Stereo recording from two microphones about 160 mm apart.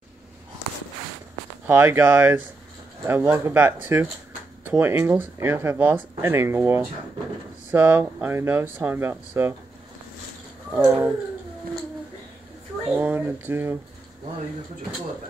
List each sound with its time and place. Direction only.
1.7 s speech: 15° right (ahead or behind)
10.9 s speech: 15° right (ahead or behind)
12.9 s speech: 10° right (ahead or behind)